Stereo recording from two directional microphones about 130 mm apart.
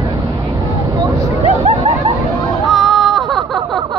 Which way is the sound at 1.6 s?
55° right (ahead or behind).